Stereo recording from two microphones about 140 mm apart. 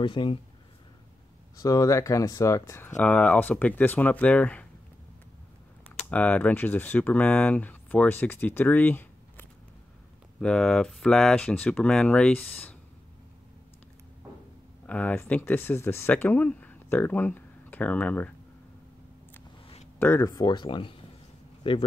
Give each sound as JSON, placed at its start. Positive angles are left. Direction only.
{"t": 0.0, "sound": "speech", "side_deg": 35}
{"t": 1.6, "sound": "speech", "side_deg": 25}
{"t": 3.0, "sound": "speech", "side_deg": 10}
{"t": 5.9, "sound": "speech", "side_deg": 10}
{"t": 14.9, "sound": "speech", "side_deg": 10}
{"t": 20.0, "sound": "speech", "side_deg": 20}